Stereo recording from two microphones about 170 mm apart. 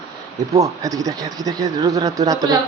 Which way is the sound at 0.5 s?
20° right (ahead or behind).